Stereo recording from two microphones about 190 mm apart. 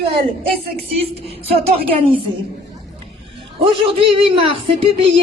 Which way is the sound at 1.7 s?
30° right (ahead or behind).